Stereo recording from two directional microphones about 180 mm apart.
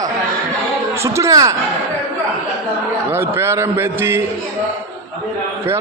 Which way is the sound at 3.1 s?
10° right (ahead or behind).